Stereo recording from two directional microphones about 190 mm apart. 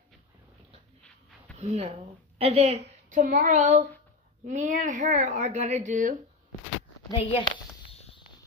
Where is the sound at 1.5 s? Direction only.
35° right (ahead or behind).